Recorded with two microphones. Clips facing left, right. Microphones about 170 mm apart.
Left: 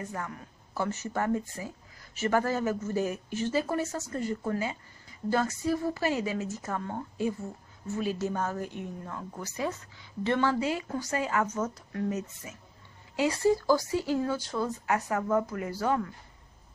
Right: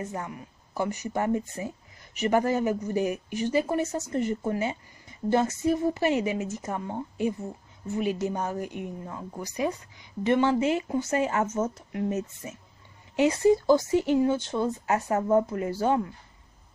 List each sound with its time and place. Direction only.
0.0 s speech: 20° right (ahead or behind)